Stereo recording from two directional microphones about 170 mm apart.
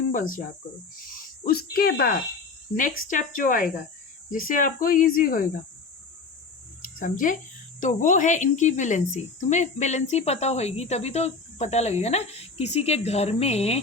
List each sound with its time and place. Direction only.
0.1 s speech: 55° left (ahead or behind)
1.1 s a sound: 60° left (ahead or behind)
1.7 s speech: 60° left (ahead or behind)
6.8 s speech: 50° left (ahead or behind)